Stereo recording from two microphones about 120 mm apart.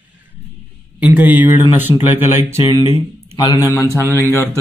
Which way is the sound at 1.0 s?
15° right (ahead or behind).